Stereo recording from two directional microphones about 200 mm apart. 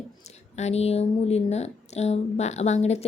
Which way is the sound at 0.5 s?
35° left (ahead or behind).